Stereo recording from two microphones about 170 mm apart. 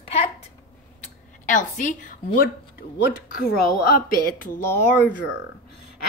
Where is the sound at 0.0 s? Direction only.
35° left (ahead or behind).